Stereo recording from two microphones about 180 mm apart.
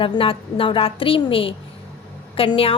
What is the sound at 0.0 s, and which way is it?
A woman's voice, 30° left (ahead or behind).